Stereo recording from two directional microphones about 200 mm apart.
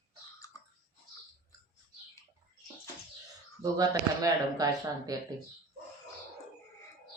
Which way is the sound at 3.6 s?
15° right (ahead or behind).